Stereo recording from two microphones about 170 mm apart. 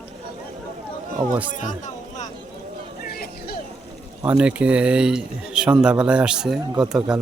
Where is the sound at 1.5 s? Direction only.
45° left (ahead or behind).